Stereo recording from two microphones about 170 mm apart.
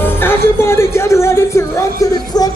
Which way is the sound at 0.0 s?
15° left (ahead or behind).